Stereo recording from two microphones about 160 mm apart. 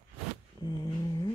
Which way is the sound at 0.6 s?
25° left (ahead or behind).